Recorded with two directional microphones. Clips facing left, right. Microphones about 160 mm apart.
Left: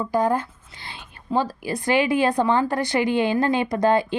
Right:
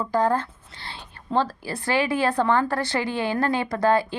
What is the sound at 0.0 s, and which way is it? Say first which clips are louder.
A woman's voice: left 1 dB; 10° left (ahead or behind).